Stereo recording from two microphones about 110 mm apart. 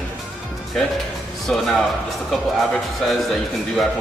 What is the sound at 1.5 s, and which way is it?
Speech, 5° left (ahead or behind).